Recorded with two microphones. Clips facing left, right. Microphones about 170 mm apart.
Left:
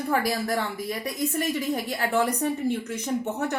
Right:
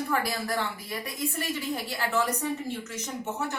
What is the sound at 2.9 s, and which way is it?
Speech, 60° left (ahead or behind).